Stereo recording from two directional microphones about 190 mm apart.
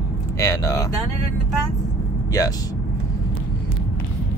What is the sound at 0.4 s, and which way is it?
Speech, 15° left (ahead or behind).